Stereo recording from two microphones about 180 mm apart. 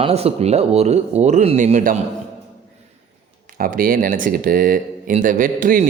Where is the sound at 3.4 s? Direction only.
50° right (ahead or behind).